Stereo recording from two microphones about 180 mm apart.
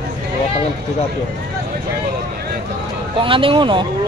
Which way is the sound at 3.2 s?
30° right (ahead or behind).